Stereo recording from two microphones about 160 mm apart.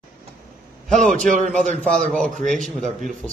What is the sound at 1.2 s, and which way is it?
Speech, 50° right (ahead or behind).